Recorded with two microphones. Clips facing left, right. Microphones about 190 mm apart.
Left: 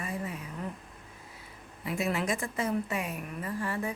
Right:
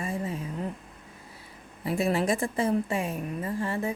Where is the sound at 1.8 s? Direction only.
35° right (ahead or behind).